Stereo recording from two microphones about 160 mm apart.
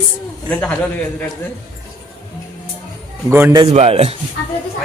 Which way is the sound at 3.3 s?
15° right (ahead or behind).